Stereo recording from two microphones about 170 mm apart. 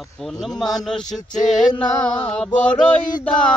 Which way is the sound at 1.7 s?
5° left (ahead or behind).